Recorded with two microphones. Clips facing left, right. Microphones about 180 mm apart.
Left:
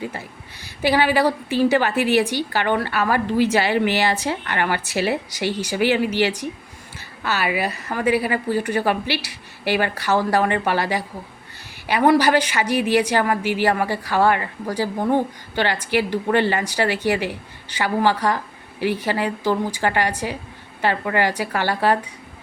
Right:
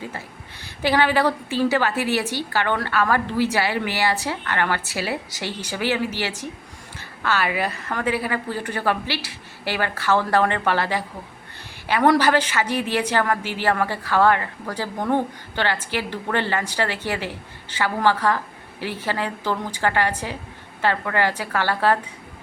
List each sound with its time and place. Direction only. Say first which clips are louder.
0.8 s a woman's voice: left 2 dB; 10° left (ahead or behind)